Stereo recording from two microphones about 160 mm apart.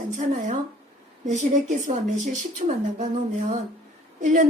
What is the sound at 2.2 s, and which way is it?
Speech, 45° right (ahead or behind).